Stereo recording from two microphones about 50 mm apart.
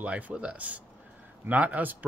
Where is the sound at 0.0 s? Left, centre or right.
Right.